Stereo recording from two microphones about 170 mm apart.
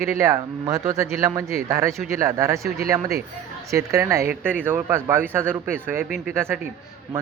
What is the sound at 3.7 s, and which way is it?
Speech, 15° right (ahead or behind).